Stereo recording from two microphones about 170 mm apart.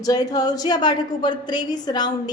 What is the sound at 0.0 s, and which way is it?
A woman's voice, 20° left (ahead or behind).